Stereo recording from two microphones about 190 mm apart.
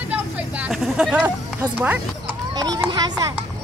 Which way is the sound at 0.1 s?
5° right (ahead or behind).